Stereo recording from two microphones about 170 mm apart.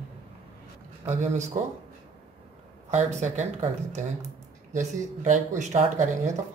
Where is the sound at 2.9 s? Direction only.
45° right (ahead or behind).